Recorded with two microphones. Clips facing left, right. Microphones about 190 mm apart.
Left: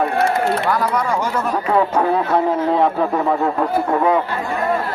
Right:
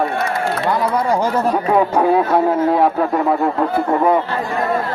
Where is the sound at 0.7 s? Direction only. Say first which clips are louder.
Right 2 dB; 30° right (ahead or behind).